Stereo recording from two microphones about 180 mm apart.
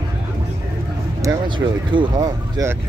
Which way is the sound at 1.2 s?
20° right (ahead or behind).